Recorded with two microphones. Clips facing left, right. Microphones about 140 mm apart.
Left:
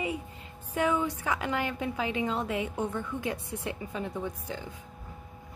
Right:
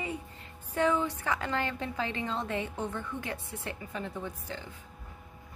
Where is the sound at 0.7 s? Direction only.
10° left (ahead or behind).